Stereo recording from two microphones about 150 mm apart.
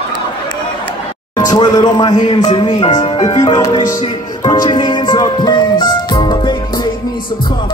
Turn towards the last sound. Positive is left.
turn(degrees=30)  # may be behind; listen again after turning